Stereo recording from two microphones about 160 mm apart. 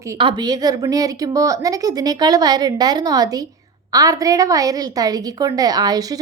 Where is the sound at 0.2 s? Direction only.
30° right (ahead or behind).